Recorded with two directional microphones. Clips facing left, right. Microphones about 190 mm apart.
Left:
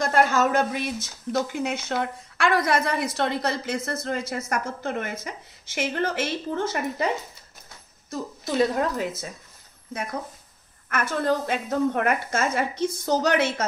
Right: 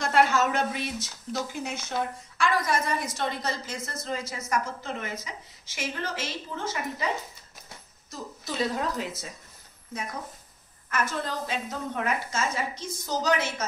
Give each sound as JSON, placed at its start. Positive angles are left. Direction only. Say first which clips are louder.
{"t": 0.0, "sound": "speech", "louder": "left 2 dB", "side_deg": 45}
{"t": 8.1, "sound": "a woman's voice", "louder": "left 7 dB", "side_deg": 55}
{"t": 10.9, "sound": "speech", "louder": "left 6 dB", "side_deg": 60}